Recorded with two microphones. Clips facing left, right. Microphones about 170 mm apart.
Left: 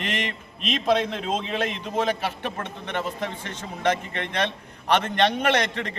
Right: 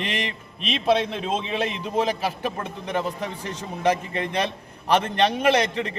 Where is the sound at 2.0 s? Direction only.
10° right (ahead or behind).